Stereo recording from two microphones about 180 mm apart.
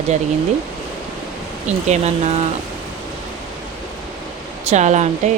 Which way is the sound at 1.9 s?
40° right (ahead or behind).